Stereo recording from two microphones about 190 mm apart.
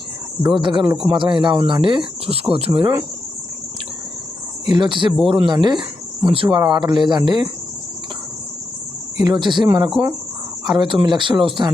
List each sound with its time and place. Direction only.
0.6 s speech: 25° right (ahead or behind)
4.6 s speech: 25° right (ahead or behind)
9.1 s speech: 20° right (ahead or behind)